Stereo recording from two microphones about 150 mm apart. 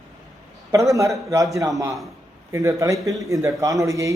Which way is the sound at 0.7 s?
20° right (ahead or behind).